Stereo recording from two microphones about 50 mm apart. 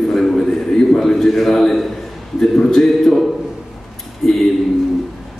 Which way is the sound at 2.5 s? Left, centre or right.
Centre.